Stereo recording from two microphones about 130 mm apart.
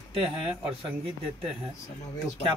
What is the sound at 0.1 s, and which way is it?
Speech, 45° right (ahead or behind).